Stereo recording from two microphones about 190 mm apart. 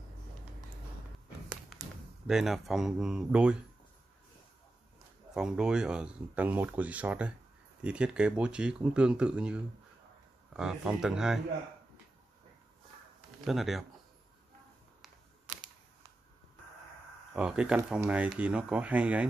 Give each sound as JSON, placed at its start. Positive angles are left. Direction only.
{"t": 1.8, "sound": "a sound", "side_deg": -20}
{"t": 2.2, "sound": "speech", "side_deg": 0}
{"t": 5.3, "sound": "speech", "side_deg": -5}
{"t": 13.5, "sound": "speech", "side_deg": 0}
{"t": 17.4, "sound": "speech", "side_deg": -5}